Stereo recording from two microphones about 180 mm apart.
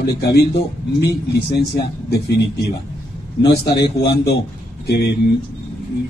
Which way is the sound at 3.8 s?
65° left (ahead or behind).